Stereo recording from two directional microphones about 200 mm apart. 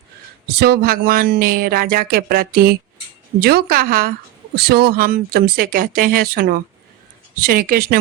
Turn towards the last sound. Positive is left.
turn(degrees=-45)  # may be behind; listen again after turning